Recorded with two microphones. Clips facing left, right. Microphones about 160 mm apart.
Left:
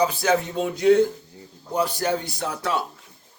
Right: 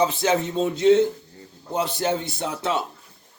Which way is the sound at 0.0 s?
25° right (ahead or behind).